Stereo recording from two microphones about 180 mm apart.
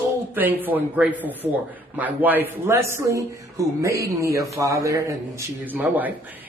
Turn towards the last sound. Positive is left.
turn(degrees=-10)  # may be behind; listen again after turning